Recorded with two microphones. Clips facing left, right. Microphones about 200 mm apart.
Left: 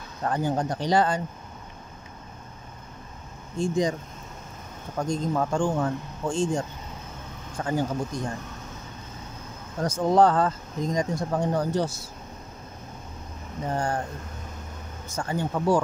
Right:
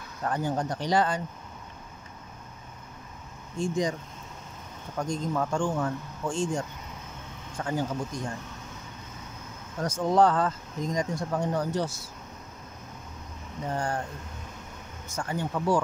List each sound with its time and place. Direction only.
0.2 s speech: 30° left (ahead or behind)
3.5 s speech: 35° left (ahead or behind)
4.9 s speech: 40° left (ahead or behind)
9.8 s speech: 40° left (ahead or behind)
13.7 s speech: 40° left (ahead or behind)
15.1 s speech: 30° left (ahead or behind)